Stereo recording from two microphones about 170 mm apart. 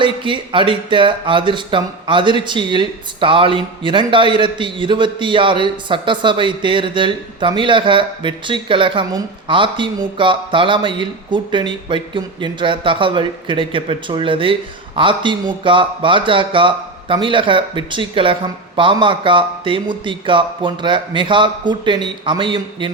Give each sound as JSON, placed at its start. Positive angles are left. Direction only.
{"t": 0.0, "sound": "speech", "side_deg": -30}